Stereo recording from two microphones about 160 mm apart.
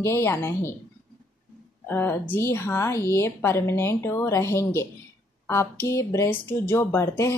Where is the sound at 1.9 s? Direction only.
15° left (ahead or behind).